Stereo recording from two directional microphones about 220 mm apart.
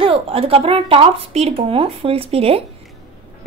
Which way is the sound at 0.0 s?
25° right (ahead or behind).